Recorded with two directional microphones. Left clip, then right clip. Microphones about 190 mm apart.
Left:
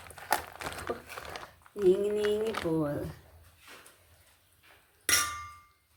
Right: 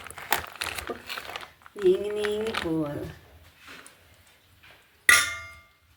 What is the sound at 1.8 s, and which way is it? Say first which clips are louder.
Speech: right 2 dB; 10° left (ahead or behind).